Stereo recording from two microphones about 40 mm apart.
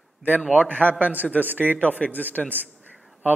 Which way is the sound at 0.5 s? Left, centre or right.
Right.